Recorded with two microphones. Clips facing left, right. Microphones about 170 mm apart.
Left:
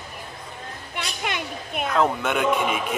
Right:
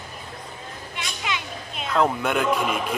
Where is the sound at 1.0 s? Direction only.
55° left (ahead or behind).